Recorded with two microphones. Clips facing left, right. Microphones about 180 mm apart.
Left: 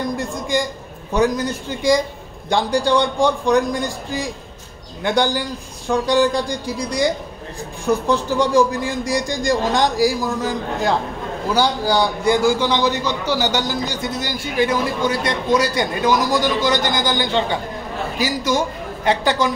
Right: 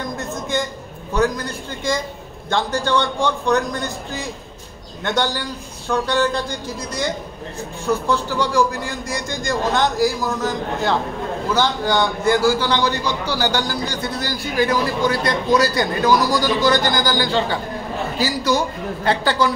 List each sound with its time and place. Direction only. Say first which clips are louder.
0.2 s speech: left 2 dB; 15° left (ahead or behind)
5.9 s a man's voice: left 3 dB; 15° left (ahead or behind)